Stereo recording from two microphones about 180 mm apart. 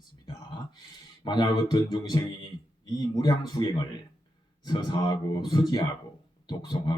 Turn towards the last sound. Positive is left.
turn(degrees=25)  # may be behind; listen again after turning